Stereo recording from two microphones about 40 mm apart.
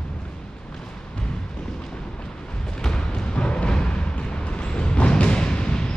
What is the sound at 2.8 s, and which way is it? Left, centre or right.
Music, left.